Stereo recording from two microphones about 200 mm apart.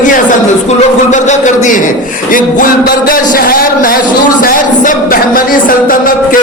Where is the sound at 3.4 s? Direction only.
45° left (ahead or behind).